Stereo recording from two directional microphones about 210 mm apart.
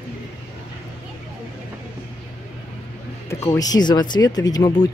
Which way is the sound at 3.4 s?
15° left (ahead or behind).